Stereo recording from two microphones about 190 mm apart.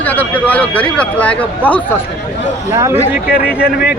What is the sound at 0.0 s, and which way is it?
Speech, 10° left (ahead or behind).